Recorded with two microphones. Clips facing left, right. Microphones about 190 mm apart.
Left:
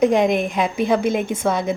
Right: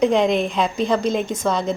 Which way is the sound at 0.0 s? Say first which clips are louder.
Left 1 dB; 50° left (ahead or behind).